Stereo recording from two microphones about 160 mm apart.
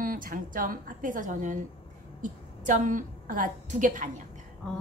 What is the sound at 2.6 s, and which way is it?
A woman's voice, 55° right (ahead or behind).